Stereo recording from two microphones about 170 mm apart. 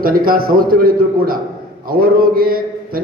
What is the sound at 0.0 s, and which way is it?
A man's voice, 60° right (ahead or behind).